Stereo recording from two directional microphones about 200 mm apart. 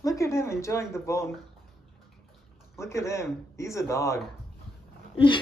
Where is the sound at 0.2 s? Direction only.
15° left (ahead or behind).